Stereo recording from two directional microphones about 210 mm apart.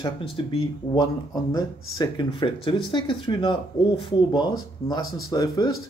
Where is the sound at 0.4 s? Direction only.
25° left (ahead or behind).